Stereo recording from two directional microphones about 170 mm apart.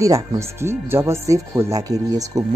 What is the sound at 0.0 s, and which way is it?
Speech, 20° right (ahead or behind).